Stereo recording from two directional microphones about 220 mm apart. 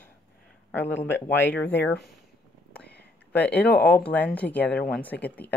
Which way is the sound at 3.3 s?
45° left (ahead or behind).